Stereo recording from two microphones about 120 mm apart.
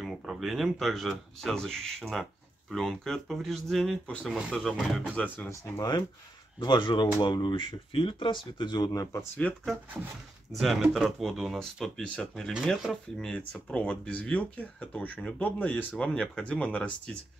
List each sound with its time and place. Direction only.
0.0 s speech: centre (ahead or behind)
5.1 s speech: 15° left (ahead or behind)
5.5 s speech: 25° left (ahead or behind)
6.6 s speech: 35° left (ahead or behind)
9.4 s speech: 10° left (ahead or behind)
10.5 s speech: centre (ahead or behind)